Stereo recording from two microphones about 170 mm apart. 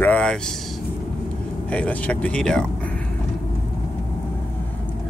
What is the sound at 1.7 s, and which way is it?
Speech, 10° left (ahead or behind).